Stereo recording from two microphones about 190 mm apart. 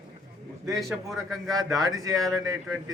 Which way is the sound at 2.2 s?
Centre (ahead or behind).